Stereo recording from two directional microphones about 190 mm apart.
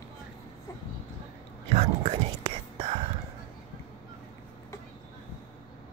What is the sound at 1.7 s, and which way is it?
Whispering, 30° right (ahead or behind).